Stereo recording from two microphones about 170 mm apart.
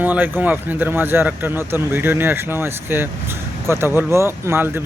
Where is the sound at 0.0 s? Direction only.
10° right (ahead or behind).